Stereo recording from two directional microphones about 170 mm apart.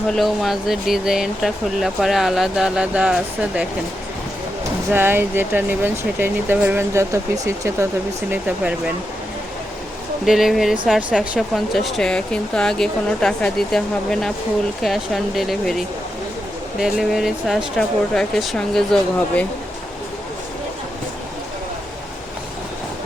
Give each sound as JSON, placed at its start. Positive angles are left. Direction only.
{"t": 0.1, "sound": "speech", "side_deg": 0}
{"t": 4.9, "sound": "speech", "side_deg": -15}
{"t": 8.3, "sound": "speech", "side_deg": -5}
{"t": 10.2, "sound": "speech", "side_deg": 0}
{"t": 16.8, "sound": "speech", "side_deg": 0}